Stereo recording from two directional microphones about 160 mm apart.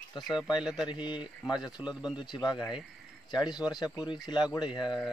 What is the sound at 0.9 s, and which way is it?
Speech, 30° left (ahead or behind).